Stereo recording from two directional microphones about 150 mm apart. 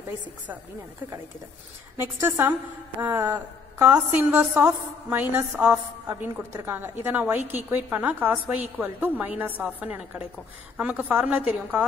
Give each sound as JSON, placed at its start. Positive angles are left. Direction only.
{"t": 2.0, "sound": "a woman's voice", "side_deg": -15}